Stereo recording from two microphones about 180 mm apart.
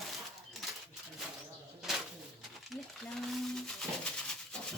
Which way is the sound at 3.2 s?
Centre (ahead or behind).